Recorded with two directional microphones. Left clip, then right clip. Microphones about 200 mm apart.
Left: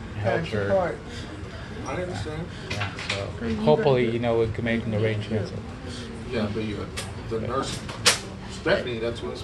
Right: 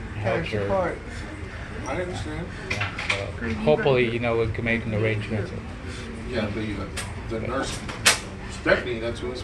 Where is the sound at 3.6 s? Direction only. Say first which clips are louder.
Even; 15° left (ahead or behind).